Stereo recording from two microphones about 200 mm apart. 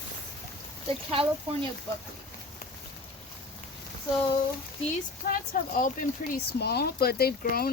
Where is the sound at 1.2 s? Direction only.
30° right (ahead or behind).